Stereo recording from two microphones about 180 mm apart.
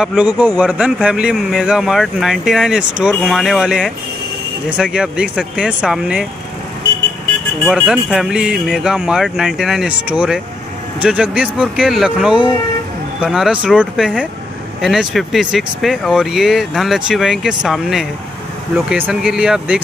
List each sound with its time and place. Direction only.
0.0 s speech: 5° right (ahead or behind)
7.6 s speech: 5° right (ahead or behind)